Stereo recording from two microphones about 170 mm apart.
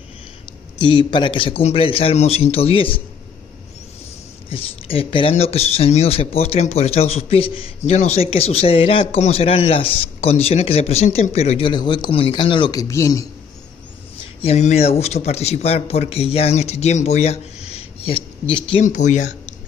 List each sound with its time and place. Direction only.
0.7 s speech: 25° left (ahead or behind)
4.5 s speech: 35° left (ahead or behind)
12.8 s a man's voice: 20° left (ahead or behind)
14.4 s speech: 40° left (ahead or behind)
18.8 s speech: 45° left (ahead or behind)